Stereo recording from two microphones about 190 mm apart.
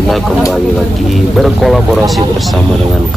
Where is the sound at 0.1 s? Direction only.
Centre (ahead or behind).